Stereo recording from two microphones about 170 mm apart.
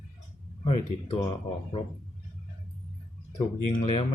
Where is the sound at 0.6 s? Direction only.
35° left (ahead or behind).